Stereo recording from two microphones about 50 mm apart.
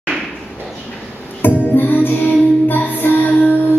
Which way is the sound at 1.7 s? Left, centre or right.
Left.